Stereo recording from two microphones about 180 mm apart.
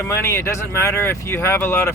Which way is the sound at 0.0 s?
15° left (ahead or behind).